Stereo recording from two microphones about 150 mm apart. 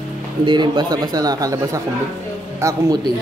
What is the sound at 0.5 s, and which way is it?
A man's voice, 30° right (ahead or behind).